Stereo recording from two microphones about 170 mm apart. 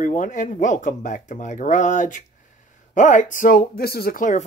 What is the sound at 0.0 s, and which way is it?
Speech, 50° left (ahead or behind).